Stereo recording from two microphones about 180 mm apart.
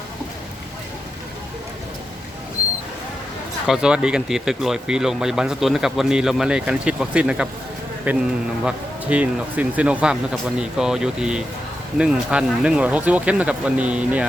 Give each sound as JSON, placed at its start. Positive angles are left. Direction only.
{"t": 3.7, "sound": "speech", "side_deg": -5}